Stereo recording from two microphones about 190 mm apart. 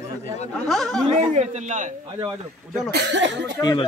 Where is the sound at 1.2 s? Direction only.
35° right (ahead or behind).